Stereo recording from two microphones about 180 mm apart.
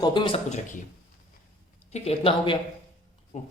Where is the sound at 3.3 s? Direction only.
40° left (ahead or behind).